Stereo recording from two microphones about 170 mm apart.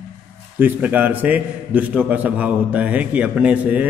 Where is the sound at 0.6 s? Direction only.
10° right (ahead or behind).